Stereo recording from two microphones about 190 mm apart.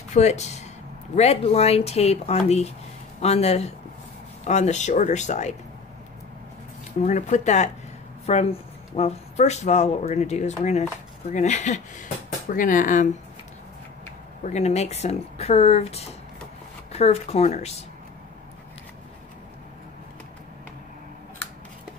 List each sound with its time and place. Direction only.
0.1 s speech: 35° left (ahead or behind)
7.0 s speech: 40° left (ahead or behind)
14.4 s speech: 35° left (ahead or behind)